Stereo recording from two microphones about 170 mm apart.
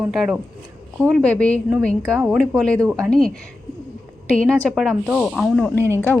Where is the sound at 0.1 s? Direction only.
5° right (ahead or behind).